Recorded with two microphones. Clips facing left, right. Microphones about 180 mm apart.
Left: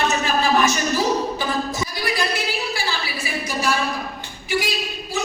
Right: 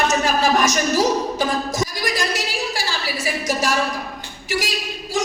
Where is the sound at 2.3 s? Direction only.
90° right.